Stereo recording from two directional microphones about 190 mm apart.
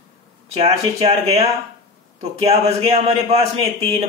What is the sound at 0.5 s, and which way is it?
A man's voice, 30° right (ahead or behind).